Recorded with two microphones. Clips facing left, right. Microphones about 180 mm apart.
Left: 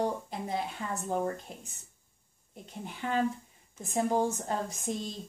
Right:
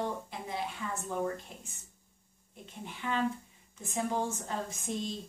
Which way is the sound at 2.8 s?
45° left (ahead or behind).